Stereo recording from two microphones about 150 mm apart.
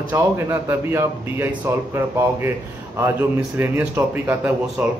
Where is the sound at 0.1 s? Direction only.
15° right (ahead or behind).